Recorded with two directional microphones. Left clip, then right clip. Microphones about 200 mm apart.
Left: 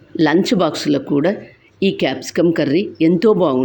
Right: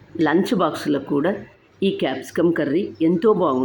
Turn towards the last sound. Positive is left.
turn(degrees=25)  # may be behind; listen again after turning